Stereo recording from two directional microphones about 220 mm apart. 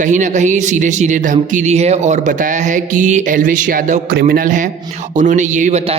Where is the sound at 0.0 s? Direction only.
35° right (ahead or behind).